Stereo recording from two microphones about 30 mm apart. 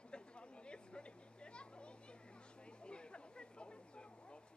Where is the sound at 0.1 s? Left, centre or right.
Left.